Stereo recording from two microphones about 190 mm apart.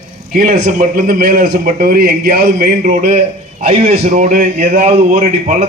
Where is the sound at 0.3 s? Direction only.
50° right (ahead or behind).